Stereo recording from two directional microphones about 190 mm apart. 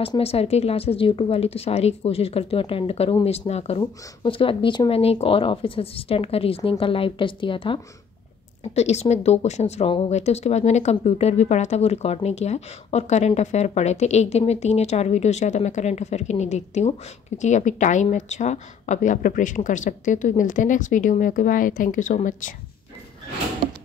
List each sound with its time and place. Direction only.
0.0 s a woman's voice: 30° left (ahead or behind)